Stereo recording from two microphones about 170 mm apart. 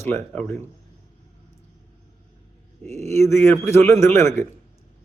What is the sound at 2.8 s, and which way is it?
Speech, 40° right (ahead or behind).